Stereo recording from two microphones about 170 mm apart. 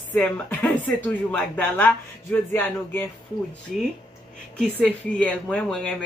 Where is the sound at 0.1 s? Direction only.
10° left (ahead or behind).